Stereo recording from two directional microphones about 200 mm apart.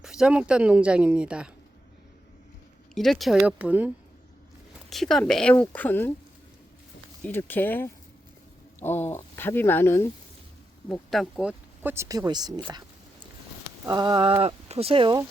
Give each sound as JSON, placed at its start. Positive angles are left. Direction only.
{"t": 0.0, "sound": "a woman's voice", "side_deg": -5}
{"t": 2.9, "sound": "a woman's voice", "side_deg": 0}
{"t": 7.3, "sound": "speech", "side_deg": 10}
{"t": 13.8, "sound": "speech", "side_deg": -20}